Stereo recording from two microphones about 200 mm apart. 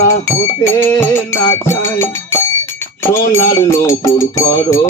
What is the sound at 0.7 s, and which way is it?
Music, 10° left (ahead or behind).